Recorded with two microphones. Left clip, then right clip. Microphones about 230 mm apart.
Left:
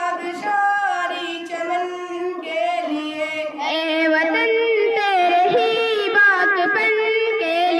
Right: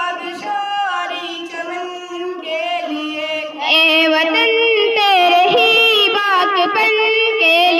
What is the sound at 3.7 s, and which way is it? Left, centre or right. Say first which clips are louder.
Female singing: right 7 dB; right.